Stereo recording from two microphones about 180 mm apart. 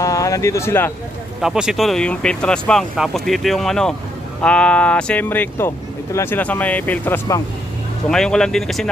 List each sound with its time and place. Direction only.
0.0 s speech: 20° left (ahead or behind)
1.4 s speech: 5° right (ahead or behind)